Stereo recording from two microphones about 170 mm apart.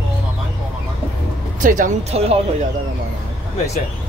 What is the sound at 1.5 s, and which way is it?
Speech, 50° right (ahead or behind).